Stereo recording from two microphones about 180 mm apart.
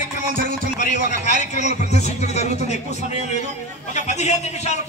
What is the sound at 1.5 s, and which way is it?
A man's voice, 40° left (ahead or behind).